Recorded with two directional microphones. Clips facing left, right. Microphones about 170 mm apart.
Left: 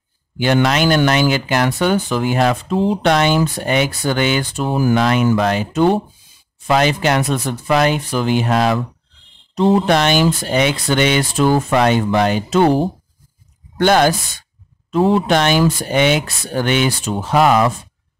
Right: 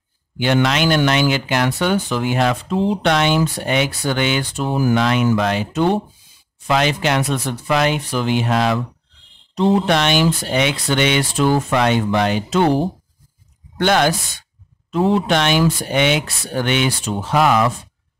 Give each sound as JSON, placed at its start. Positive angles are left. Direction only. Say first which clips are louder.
{"t": 0.4, "sound": "speech", "louder": "left 2 dB", "side_deg": 45}
{"t": 13.7, "sound": "speech", "louder": "left 3 dB", "side_deg": 40}